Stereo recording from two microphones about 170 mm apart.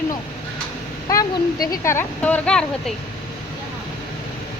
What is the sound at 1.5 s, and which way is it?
Speech, 60° left (ahead or behind).